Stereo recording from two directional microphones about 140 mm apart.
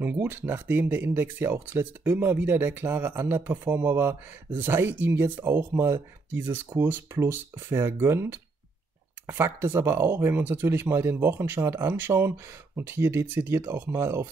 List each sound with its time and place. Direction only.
0.0 s speech: 15° right (ahead or behind)